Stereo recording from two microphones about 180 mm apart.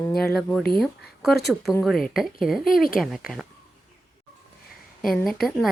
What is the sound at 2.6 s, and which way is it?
Speech, 55° left (ahead or behind).